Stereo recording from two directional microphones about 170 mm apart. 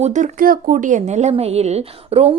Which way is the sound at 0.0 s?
45° right (ahead or behind).